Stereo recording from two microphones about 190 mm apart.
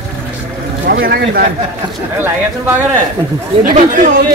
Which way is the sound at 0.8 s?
60° right (ahead or behind).